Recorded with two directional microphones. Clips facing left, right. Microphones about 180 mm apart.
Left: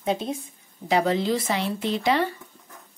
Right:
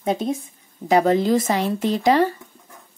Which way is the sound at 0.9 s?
45° right (ahead or behind).